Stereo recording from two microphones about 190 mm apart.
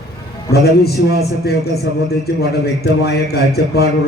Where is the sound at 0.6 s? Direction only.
55° left (ahead or behind).